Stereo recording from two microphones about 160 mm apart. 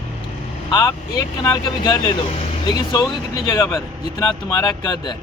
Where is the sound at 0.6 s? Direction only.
20° left (ahead or behind).